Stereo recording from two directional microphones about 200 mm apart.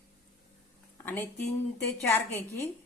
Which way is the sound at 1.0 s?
10° left (ahead or behind).